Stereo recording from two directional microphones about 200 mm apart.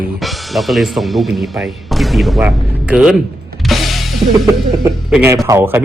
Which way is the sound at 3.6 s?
Centre (ahead or behind).